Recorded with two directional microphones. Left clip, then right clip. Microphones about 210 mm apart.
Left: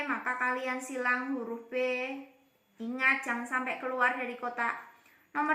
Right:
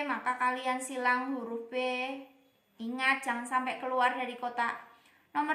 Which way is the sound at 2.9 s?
45° right (ahead or behind).